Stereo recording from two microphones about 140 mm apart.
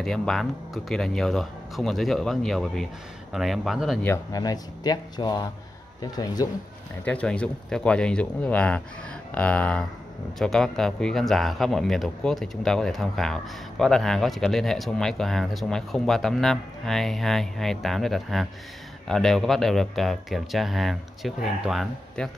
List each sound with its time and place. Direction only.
0.0 s speech: 5° left (ahead or behind)
4.0 s speech: 20° left (ahead or behind)
7.1 s speech: 10° left (ahead or behind)